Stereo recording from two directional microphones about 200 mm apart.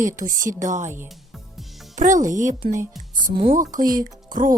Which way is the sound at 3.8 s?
20° right (ahead or behind).